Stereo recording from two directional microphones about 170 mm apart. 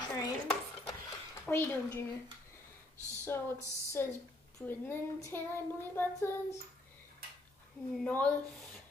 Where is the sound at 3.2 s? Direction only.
15° left (ahead or behind).